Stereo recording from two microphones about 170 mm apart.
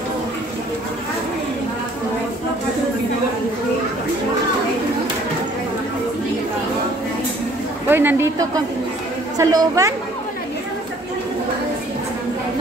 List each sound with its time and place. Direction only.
7.9 s speech: 10° right (ahead or behind)